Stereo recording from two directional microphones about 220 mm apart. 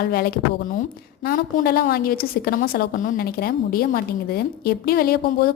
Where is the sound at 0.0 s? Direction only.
45° left (ahead or behind).